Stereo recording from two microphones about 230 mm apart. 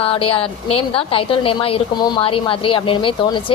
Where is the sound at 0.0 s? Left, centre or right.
Left.